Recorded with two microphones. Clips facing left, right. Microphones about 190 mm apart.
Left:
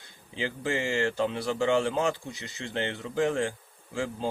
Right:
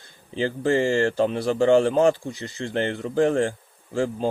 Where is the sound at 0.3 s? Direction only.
50° right (ahead or behind).